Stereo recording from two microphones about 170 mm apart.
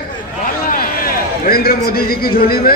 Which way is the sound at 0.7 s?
60° left (ahead or behind).